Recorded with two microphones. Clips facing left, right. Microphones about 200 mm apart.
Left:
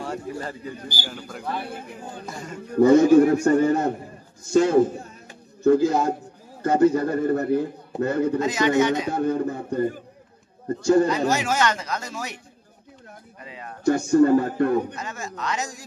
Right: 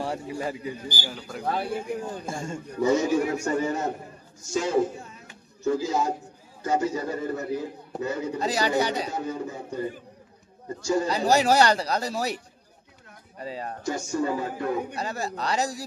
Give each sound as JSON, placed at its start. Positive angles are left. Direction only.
{"t": 0.0, "sound": "a man's voice", "side_deg": -15}
{"t": 1.0, "sound": "a man's voice", "side_deg": 0}
{"t": 2.2, "sound": "a man's voice", "side_deg": -25}
{"t": 2.7, "sound": "a man's voice", "side_deg": 55}
{"t": 8.4, "sound": "speech", "side_deg": -35}
{"t": 9.1, "sound": "a man's voice", "side_deg": 55}
{"t": 11.1, "sound": "speech", "side_deg": -35}
{"t": 13.4, "sound": "speech", "side_deg": -35}
{"t": 13.8, "sound": "a man's voice", "side_deg": 60}
{"t": 15.0, "sound": "speech", "side_deg": -35}